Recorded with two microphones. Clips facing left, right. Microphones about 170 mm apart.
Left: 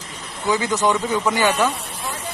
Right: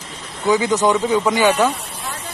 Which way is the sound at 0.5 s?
20° right (ahead or behind).